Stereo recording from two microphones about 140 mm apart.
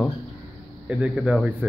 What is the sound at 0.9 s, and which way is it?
Speech, 10° right (ahead or behind).